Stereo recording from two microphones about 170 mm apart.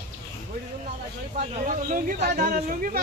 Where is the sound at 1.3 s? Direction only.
55° right (ahead or behind).